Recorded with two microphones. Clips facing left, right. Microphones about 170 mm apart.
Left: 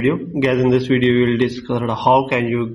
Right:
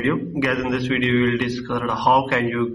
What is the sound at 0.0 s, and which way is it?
A man's voice, 20° left (ahead or behind).